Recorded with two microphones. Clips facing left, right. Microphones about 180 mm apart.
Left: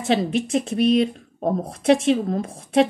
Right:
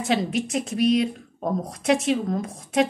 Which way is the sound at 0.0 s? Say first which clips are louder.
Left 3 dB; 25° left (ahead or behind).